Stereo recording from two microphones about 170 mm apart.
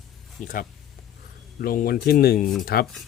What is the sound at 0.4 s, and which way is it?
Speech, 45° left (ahead or behind).